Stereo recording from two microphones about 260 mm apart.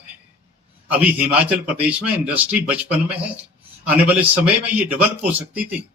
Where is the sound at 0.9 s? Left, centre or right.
Centre.